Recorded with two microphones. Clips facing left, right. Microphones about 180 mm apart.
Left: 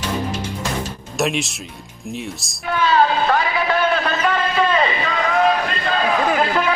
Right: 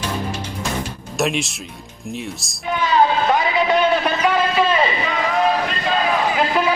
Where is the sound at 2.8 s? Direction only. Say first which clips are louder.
Even; 20° right (ahead or behind).